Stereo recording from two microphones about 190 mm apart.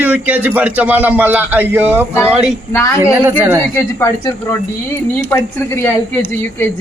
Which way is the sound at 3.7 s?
15° left (ahead or behind).